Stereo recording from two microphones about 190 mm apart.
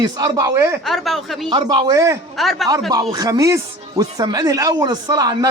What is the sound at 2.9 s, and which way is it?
Speech, 20° right (ahead or behind).